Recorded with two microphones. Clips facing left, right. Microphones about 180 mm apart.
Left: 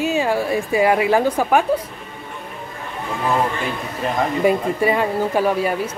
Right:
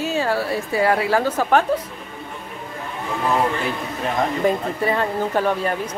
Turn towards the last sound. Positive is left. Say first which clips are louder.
# left 2 dB
turn(degrees=10)  # may be behind; listen again after turning